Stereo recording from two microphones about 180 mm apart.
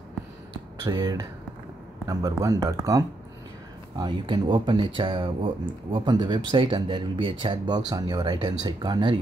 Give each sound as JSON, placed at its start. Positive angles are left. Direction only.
{"t": 0.8, "sound": "speech", "side_deg": -20}